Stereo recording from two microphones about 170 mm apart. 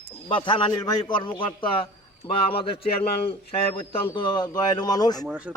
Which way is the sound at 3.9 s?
25° left (ahead or behind).